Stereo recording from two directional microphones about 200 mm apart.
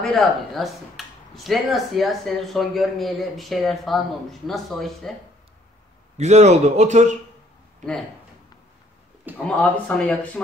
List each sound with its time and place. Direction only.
0.0 s speech: centre (ahead or behind)
6.1 s speech: 35° right (ahead or behind)
9.3 s a man's voice: 10° right (ahead or behind)
9.6 s speech: 5° left (ahead or behind)